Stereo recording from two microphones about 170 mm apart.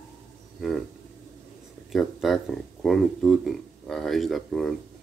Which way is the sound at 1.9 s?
Centre (ahead or behind).